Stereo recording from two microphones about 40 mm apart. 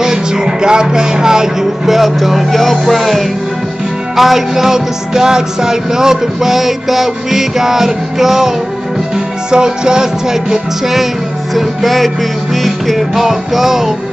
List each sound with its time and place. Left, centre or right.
0.0 s speech: centre
2.8 s music: centre
11.5 s music: centre